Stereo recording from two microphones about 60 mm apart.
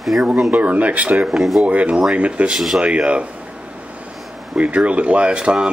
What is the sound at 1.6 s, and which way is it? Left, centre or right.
Speech, right.